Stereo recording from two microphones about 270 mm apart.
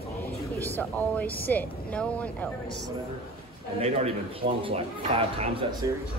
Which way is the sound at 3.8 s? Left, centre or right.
Right.